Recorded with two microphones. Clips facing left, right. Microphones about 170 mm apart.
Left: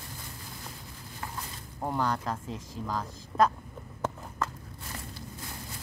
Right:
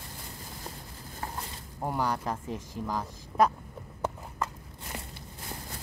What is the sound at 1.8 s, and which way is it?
Speech, 10° right (ahead or behind).